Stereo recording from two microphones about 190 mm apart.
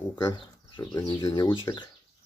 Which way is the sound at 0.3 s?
25° left (ahead or behind).